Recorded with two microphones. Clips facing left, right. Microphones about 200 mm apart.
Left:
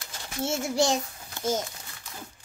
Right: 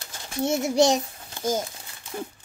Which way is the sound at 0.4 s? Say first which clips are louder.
Right 5 dB; 20° right (ahead or behind).